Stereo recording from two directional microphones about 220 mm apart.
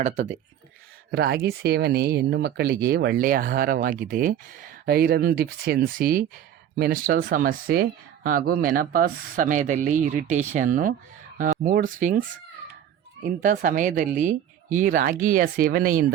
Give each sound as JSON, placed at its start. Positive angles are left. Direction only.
{"t": 0.0, "sound": "speech", "side_deg": -30}
{"t": 1.1, "sound": "speech", "side_deg": -45}
{"t": 13.4, "sound": "speech", "side_deg": -35}